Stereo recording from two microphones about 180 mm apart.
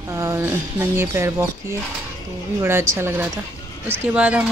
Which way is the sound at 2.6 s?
15° right (ahead or behind).